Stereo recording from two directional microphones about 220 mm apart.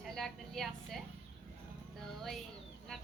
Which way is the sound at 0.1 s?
Centre (ahead or behind).